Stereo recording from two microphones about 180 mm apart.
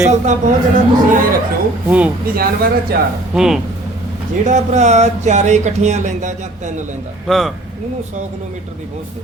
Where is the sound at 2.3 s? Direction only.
55° right (ahead or behind).